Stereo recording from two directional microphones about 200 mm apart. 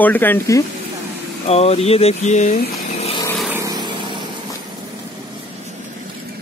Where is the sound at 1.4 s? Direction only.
30° left (ahead or behind).